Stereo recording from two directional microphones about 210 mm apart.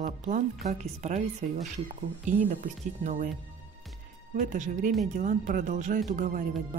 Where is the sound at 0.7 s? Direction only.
35° right (ahead or behind).